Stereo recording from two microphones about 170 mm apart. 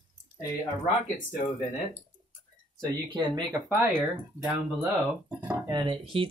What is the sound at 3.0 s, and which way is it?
Speech, 25° right (ahead or behind).